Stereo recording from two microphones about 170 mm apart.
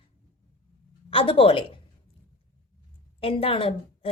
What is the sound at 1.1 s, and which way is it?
Speech, 35° left (ahead or behind).